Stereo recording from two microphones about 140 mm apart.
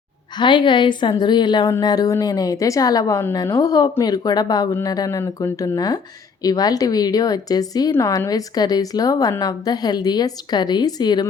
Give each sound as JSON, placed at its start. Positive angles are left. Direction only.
{"t": 0.3, "sound": "a woman's voice", "side_deg": 35}